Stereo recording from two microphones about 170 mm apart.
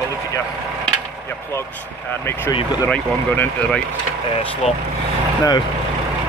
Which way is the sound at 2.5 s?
25° left (ahead or behind).